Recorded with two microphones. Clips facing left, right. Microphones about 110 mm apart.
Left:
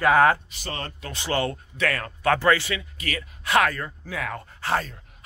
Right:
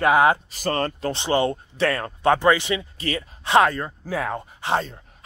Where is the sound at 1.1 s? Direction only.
20° right (ahead or behind).